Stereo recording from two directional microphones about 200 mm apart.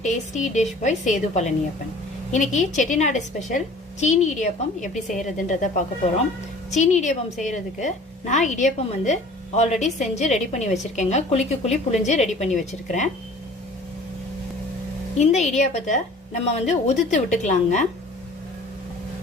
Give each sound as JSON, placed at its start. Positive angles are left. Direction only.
{"t": 0.0, "sound": "a woman's voice", "side_deg": 35}
{"t": 15.2, "sound": "a woman's voice", "side_deg": 35}